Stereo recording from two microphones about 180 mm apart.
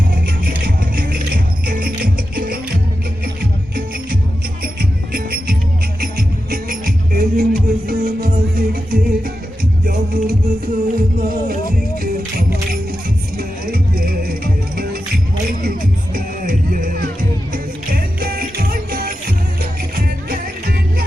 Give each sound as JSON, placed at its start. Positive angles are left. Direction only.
{"t": 0.1, "sound": "music", "side_deg": -50}
{"t": 4.6, "sound": "music", "side_deg": -55}